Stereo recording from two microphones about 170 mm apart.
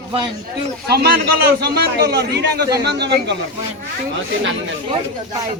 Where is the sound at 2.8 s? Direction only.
85° right.